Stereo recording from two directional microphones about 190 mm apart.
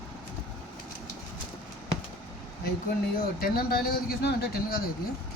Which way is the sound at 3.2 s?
50° left (ahead or behind).